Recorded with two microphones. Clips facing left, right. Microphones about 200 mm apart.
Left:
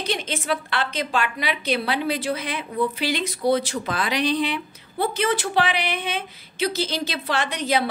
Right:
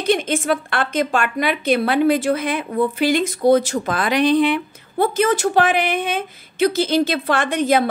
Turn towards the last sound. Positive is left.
turn(degrees=-50)  # may be behind; listen again after turning